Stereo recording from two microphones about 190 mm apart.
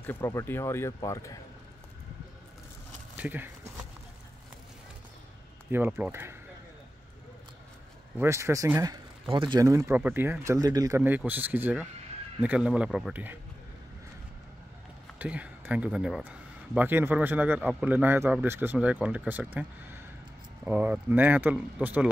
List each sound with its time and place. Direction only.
0.0 s speech: 10° left (ahead or behind)
3.2 s speech: 10° right (ahead or behind)
5.7 s a man's voice: 10° right (ahead or behind)
8.2 s a man's voice: 15° right (ahead or behind)
15.1 s a man's voice: 5° right (ahead or behind)